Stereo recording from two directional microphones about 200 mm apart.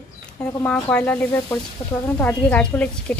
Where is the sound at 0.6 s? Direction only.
10° left (ahead or behind).